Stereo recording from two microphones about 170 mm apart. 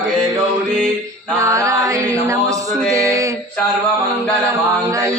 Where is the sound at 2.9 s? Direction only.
20° right (ahead or behind).